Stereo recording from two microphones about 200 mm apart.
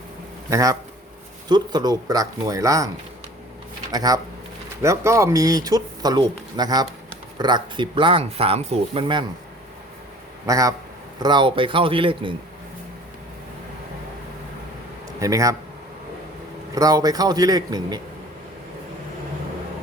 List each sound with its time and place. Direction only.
0.5 s speech: 15° right (ahead or behind)
3.9 s speech: 20° right (ahead or behind)
10.4 s speech: 15° right (ahead or behind)
15.2 s speech: 15° right (ahead or behind)
16.7 s speech: 20° right (ahead or behind)